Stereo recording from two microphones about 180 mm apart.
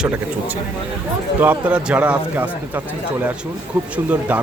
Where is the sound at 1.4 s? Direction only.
10° right (ahead or behind).